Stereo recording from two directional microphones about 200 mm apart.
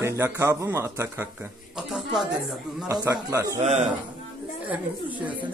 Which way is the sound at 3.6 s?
35° right (ahead or behind).